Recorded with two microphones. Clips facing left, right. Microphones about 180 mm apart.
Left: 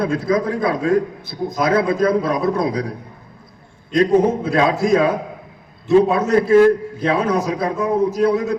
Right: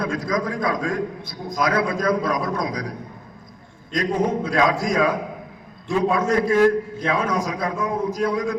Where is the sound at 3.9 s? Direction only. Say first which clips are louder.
Left 7 dB; 25° left (ahead or behind).